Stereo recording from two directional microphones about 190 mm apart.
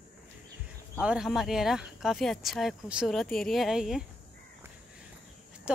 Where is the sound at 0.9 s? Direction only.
5° right (ahead or behind).